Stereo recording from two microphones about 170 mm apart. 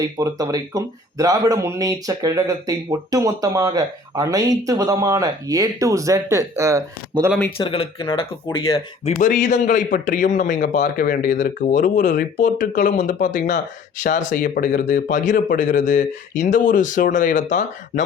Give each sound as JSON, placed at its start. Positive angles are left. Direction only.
{"t": 0.0, "sound": "speech", "side_deg": -20}
{"t": 7.6, "sound": "speech", "side_deg": 30}
{"t": 9.1, "sound": "speech", "side_deg": 50}